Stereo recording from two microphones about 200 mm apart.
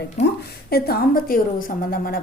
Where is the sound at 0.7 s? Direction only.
50° left (ahead or behind).